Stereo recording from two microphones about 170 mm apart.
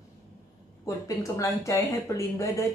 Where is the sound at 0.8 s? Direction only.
20° left (ahead or behind).